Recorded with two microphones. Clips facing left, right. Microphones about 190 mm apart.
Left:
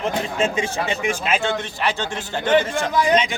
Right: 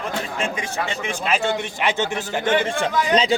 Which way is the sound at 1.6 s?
15° right (ahead or behind).